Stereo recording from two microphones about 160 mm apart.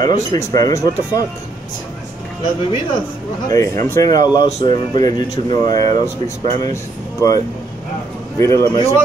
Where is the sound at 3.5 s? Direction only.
20° left (ahead or behind).